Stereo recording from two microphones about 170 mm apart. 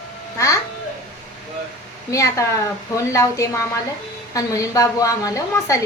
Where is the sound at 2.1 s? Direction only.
20° left (ahead or behind).